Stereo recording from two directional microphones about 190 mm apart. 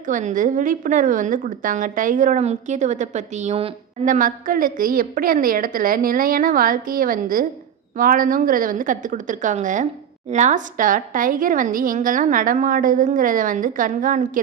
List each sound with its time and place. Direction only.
0.0 s a woman's voice: 40° right (ahead or behind)